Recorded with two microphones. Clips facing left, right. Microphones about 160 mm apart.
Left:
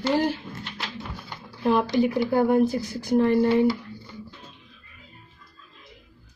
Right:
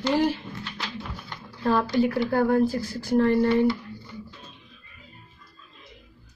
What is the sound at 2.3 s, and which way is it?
Speech, 15° left (ahead or behind).